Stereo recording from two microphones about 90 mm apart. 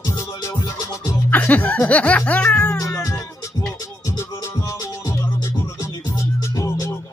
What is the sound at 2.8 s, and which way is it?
Cat, 35° left (ahead or behind).